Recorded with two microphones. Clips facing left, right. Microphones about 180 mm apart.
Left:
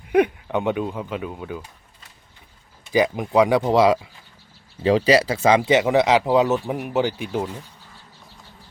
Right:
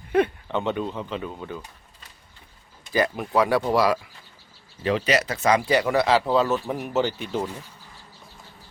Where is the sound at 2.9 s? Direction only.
15° left (ahead or behind).